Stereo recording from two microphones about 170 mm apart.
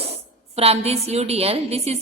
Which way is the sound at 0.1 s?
35° right (ahead or behind).